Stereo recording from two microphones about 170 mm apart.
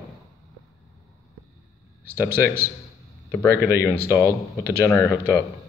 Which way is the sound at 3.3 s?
10° left (ahead or behind).